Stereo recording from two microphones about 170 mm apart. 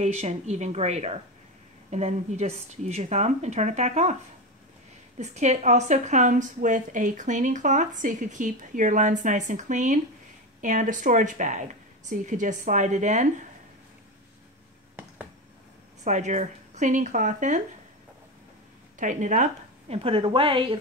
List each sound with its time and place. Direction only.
0.0 s a woman's voice: 40° right (ahead or behind)
5.2 s a woman's voice: 40° right (ahead or behind)
16.0 s a woman's voice: 45° right (ahead or behind)
18.9 s a woman's voice: 50° right (ahead or behind); by 20.6 s 30° right (ahead or behind)